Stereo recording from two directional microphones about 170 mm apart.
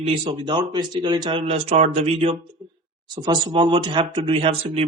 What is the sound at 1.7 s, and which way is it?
Speech, 40° right (ahead or behind).